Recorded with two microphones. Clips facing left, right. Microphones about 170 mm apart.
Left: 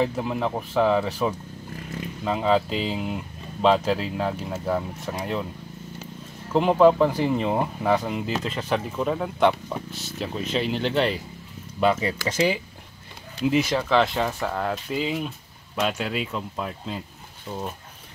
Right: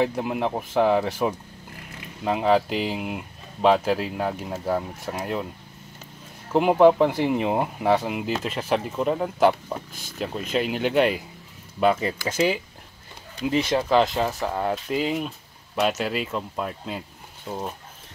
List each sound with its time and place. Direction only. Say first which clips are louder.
0.1 s speech: right 1 dB; 10° right (ahead or behind)
6.5 s speech: right 1 dB; 10° right (ahead or behind)
14.5 s speech: right 2 dB; 15° right (ahead or behind)
14.9 s speech: right 2 dB; centre (ahead or behind)